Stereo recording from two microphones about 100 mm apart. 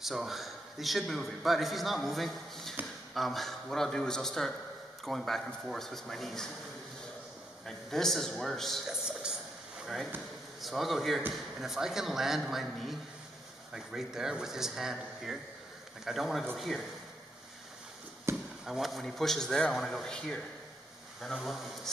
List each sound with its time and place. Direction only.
0.0 s a man's voice: centre (ahead or behind)
7.6 s a man's voice: 5° left (ahead or behind)
10.6 s a man's voice: centre (ahead or behind)
18.3 s chop: 30° right (ahead or behind)
18.7 s a man's voice: centre (ahead or behind)